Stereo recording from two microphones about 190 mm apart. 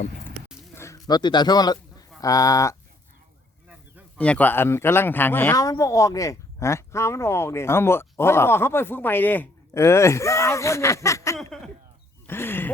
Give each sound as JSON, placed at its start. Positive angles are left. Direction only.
{"t": 0.8, "sound": "a man's voice", "side_deg": 15}
{"t": 4.2, "sound": "speech", "side_deg": 5}
{"t": 11.3, "sound": "a sound", "side_deg": 0}
{"t": 12.3, "sound": "speech", "side_deg": 10}